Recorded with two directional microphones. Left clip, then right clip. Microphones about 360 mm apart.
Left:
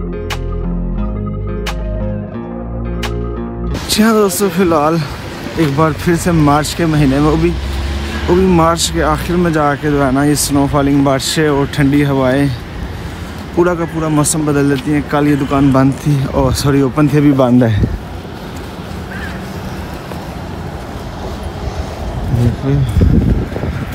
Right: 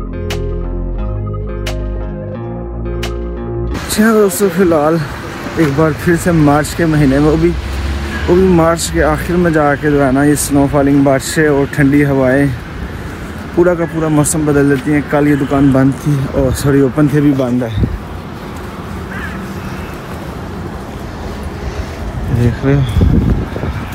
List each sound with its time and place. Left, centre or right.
3.9 s a man's voice: centre
13.6 s a man's voice: centre
17.2 s a man's voice: left
22.7 s a man's voice: centre